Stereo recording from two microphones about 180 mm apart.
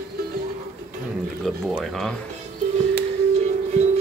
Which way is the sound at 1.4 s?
Centre (ahead or behind).